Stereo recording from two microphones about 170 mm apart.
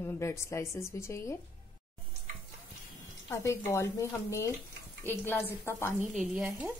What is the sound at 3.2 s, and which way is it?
A woman's voice, 15° left (ahead or behind).